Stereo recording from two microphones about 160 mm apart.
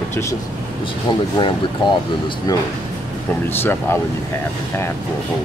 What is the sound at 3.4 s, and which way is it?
Speech, 15° left (ahead or behind).